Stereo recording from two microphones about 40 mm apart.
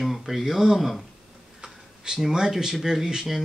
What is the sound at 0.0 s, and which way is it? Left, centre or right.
Speech, centre.